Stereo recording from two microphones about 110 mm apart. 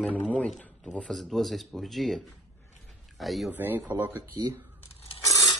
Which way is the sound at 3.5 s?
15° right (ahead or behind).